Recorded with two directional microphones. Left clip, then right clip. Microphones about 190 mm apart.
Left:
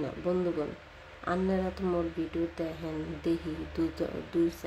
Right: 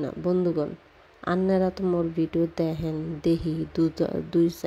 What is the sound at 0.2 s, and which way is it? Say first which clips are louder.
Speech: right 6 dB; 40° right (ahead or behind).